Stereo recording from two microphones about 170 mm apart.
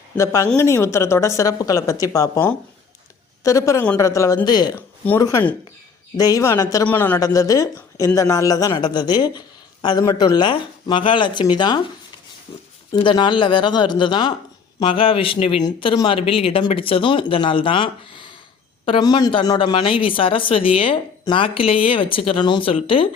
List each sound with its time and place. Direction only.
0.2 s a woman's voice: 15° left (ahead or behind)
3.4 s speech: 20° left (ahead or behind)
4.7 s a woman's voice: 10° left (ahead or behind)
12.9 s speech: 25° left (ahead or behind)